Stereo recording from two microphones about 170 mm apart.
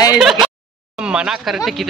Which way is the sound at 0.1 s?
Centre (ahead or behind).